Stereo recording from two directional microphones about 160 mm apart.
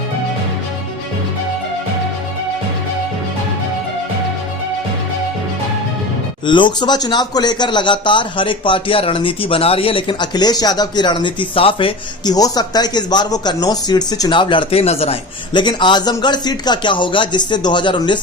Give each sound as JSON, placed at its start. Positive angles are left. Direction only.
{"t": 6.4, "sound": "a man's voice", "side_deg": 30}